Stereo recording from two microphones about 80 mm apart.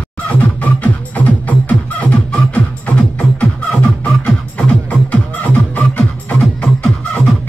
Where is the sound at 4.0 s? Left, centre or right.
Centre.